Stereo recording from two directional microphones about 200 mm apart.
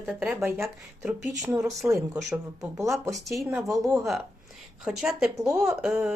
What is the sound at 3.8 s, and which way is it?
Speech, 15° right (ahead or behind).